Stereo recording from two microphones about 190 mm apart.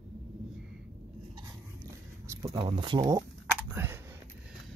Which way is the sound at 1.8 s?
15° right (ahead or behind).